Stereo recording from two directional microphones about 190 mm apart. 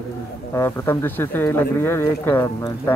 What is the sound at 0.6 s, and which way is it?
Speech, 10° left (ahead or behind).